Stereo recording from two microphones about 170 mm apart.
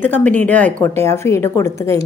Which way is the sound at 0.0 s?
10° left (ahead or behind).